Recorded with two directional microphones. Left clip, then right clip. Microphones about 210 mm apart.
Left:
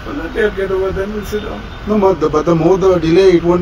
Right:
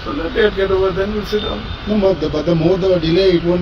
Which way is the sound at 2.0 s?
20° left (ahead or behind).